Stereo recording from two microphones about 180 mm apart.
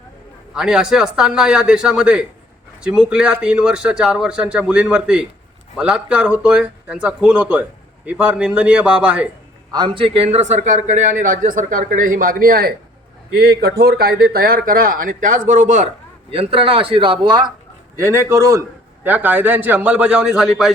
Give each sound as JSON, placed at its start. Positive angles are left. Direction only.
{"t": 0.5, "sound": "a man's voice", "side_deg": -5}
{"t": 9.7, "sound": "a man's voice", "side_deg": -30}
{"t": 16.3, "sound": "a man's voice", "side_deg": -30}
{"t": 17.9, "sound": "a man's voice", "side_deg": -15}